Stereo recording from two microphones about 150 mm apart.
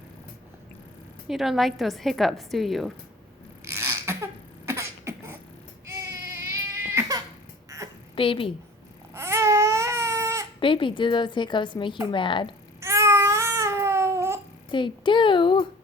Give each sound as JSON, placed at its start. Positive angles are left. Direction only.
{"t": 1.3, "sound": "a woman's voice", "side_deg": 0}
{"t": 3.6, "sound": "a sound", "side_deg": -20}
{"t": 5.8, "sound": "baby cry", "side_deg": -20}
{"t": 8.1, "sound": "a woman's voice", "side_deg": 35}
{"t": 9.1, "sound": "baby cry", "side_deg": -20}
{"t": 10.6, "sound": "a woman's voice", "side_deg": 35}
{"t": 12.8, "sound": "babbling", "side_deg": -20}
{"t": 14.7, "sound": "a woman's voice", "side_deg": 30}